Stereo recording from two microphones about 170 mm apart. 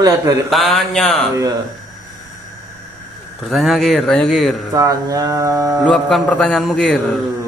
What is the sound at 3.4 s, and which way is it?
Speech, centre (ahead or behind).